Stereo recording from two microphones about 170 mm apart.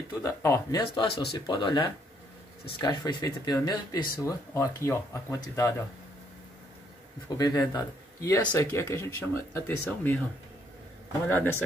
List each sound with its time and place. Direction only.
0.2 s speech: 15° left (ahead or behind)
7.3 s speech: 20° left (ahead or behind)
11.2 s speech: 10° left (ahead or behind)